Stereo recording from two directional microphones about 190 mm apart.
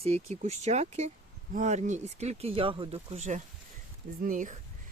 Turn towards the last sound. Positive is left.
turn(degrees=-45)  # may be behind; listen again after turning